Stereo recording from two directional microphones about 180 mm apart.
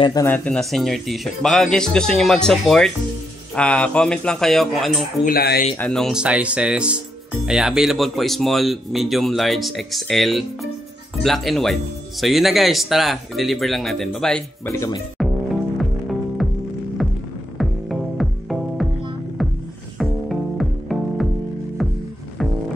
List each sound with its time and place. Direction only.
0.0 s speech: 20° left (ahead or behind)
0.3 s speech: 5° left (ahead or behind)
5.2 s speech: 55° left (ahead or behind)
5.8 s speech: 5° left (ahead or behind)
14.7 s speech: 15° left (ahead or behind)
15.2 s music: centre (ahead or behind)
16.4 s music: centre (ahead or behind)
17.0 s throbbing: centre (ahead or behind)
17.6 s music: centre (ahead or behind)
20.0 s music: centre (ahead or behind)